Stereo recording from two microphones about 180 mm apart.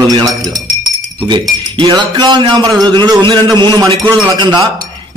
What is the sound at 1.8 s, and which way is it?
A man's voice, 25° right (ahead or behind).